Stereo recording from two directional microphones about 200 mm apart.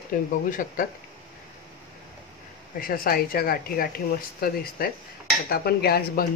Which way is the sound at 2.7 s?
45° left (ahead or behind).